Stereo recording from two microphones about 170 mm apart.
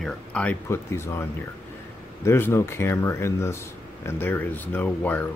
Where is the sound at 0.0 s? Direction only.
5° left (ahead or behind).